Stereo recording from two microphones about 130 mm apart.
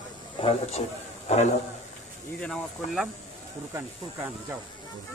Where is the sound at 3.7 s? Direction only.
15° right (ahead or behind).